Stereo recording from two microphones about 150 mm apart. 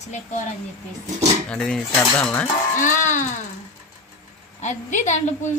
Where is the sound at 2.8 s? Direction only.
55° left (ahead or behind).